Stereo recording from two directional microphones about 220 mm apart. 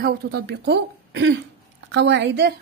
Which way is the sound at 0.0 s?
45° right (ahead or behind).